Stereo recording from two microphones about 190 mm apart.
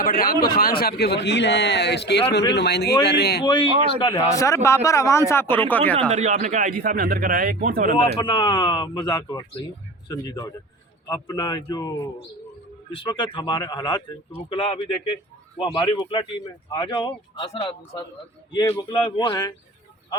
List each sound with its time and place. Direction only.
0.0 s a man's voice: 50° left (ahead or behind)
3.4 s speech: 25° left (ahead or behind); by 6.1 s 10° left (ahead or behind)
6.1 s speech: 40° right (ahead or behind)
8.2 s speech: 25° left (ahead or behind)
13.0 s speech: 25° left (ahead or behind)